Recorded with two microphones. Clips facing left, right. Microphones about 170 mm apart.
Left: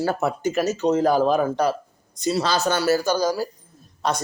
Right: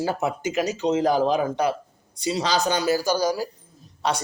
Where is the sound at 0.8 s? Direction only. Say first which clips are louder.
Left 2 dB; 50° left (ahead or behind).